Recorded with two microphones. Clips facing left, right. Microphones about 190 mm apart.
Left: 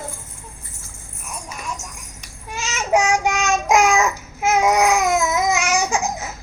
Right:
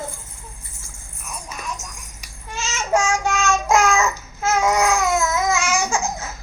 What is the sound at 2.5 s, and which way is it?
Child singing, 15° left (ahead or behind).